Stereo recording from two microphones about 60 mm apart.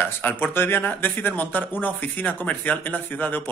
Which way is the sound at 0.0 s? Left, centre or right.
Left.